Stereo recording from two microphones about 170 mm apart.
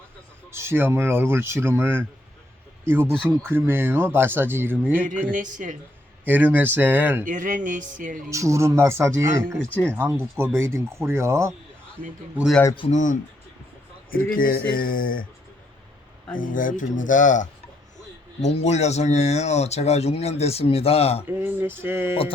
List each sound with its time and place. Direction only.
0.5 s speech: 15° right (ahead or behind)
5.0 s speech: 50° right (ahead or behind)
6.2 s speech: 10° right (ahead or behind)
7.3 s speech: 50° right (ahead or behind)
8.3 s speech: 15° right (ahead or behind)
12.4 s speech: centre (ahead or behind)
12.9 s speech: 45° left (ahead or behind)
16.3 s speech: 50° left (ahead or behind); by 21.2 s 35° left (ahead or behind)
21.2 s speech: 10° right (ahead or behind)